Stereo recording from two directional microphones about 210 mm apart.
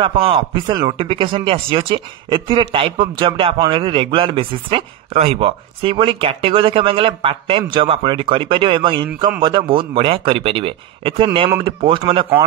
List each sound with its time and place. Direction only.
0.0 s speech: 25° right (ahead or behind)